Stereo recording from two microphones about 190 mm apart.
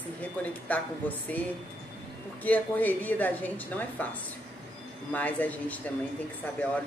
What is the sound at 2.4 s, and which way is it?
A woman's voice, 10° left (ahead or behind).